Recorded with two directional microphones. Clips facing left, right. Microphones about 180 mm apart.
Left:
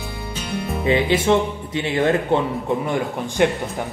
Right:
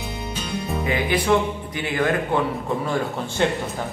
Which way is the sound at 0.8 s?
25° left (ahead or behind).